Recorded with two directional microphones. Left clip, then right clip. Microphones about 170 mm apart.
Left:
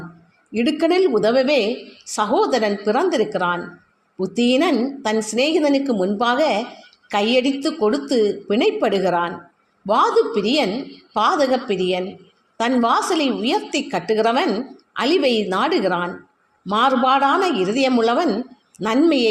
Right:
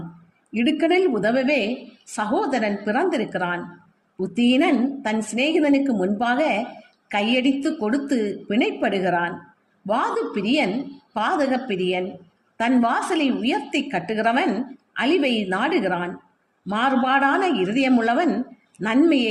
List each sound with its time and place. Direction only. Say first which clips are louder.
0.5 s a woman's voice: left 2 dB; 55° left (ahead or behind)